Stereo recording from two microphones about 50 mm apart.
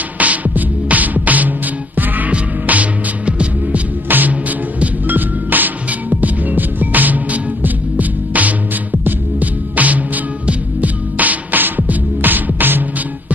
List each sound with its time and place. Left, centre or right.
0.2 s hum: right
2.0 s music: right
7.6 s hum: right
9.0 s music: right